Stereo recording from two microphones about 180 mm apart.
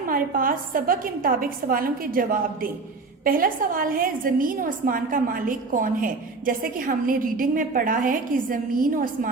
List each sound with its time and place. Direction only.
0.1 s a woman's voice: 50° right (ahead or behind)